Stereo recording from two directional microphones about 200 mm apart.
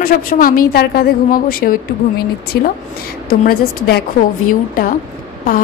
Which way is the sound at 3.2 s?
50° left (ahead or behind).